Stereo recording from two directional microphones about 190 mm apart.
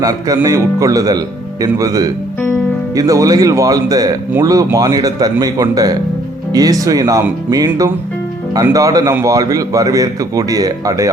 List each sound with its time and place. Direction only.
0.0 s speech: 20° right (ahead or behind)